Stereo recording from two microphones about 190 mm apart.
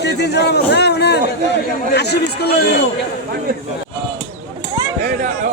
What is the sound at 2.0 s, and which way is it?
Speech, 60° left (ahead or behind).